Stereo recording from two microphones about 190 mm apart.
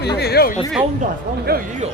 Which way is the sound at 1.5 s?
55° right (ahead or behind).